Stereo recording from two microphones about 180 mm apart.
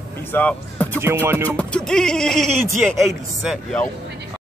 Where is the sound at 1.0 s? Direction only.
15° right (ahead or behind).